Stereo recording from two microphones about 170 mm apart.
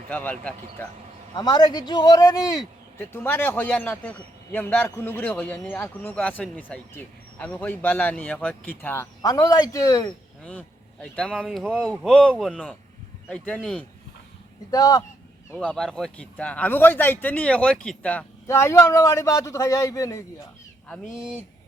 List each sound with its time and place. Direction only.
0.1 s speech: 10° left (ahead or behind)
1.4 s speech: 25° left (ahead or behind)
9.2 s speech: 20° left (ahead or behind)
11.0 s speech: 5° left (ahead or behind)
14.7 s speech: 20° left (ahead or behind)
15.5 s speech: 5° left (ahead or behind)